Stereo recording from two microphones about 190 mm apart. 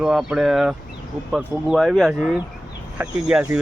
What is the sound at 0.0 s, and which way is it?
Speech, 5° right (ahead or behind).